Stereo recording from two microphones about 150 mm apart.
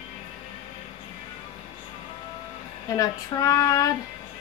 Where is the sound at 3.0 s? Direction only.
20° left (ahead or behind).